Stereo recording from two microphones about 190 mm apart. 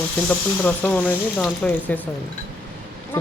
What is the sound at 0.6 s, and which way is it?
Speech, 10° left (ahead or behind).